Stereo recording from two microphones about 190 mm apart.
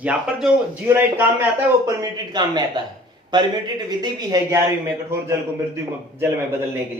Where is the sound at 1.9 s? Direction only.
20° right (ahead or behind).